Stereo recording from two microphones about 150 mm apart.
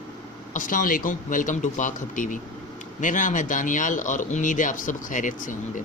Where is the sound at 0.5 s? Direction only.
60° left (ahead or behind).